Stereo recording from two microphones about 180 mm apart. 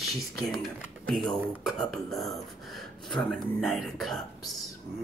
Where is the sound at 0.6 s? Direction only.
Centre (ahead or behind).